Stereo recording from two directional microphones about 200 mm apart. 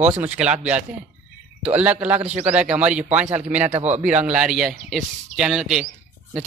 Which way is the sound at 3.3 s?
35° right (ahead or behind).